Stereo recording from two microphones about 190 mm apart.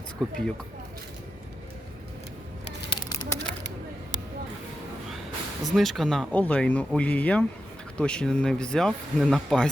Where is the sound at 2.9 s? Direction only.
20° left (ahead or behind).